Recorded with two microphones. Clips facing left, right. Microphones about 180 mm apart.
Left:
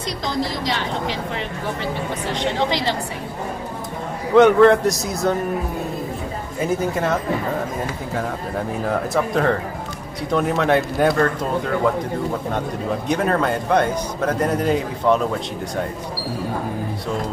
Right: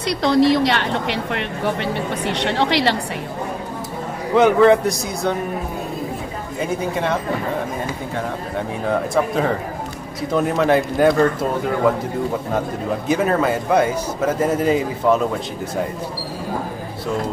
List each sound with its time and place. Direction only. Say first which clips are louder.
0.2 s speech: right 11 dB; 70° right (ahead or behind)
4.4 s a man's voice: left 1 dB; centre (ahead or behind)
6.8 s a man's voice: even; centre (ahead or behind)
8.5 s a man's voice: right 2 dB; centre (ahead or behind)
13.1 s a man's voice: right 2 dB; 5° right (ahead or behind)